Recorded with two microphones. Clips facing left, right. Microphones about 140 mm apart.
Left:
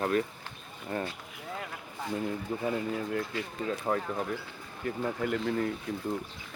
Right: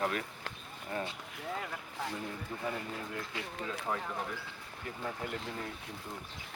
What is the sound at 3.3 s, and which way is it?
Speech, 20° right (ahead or behind).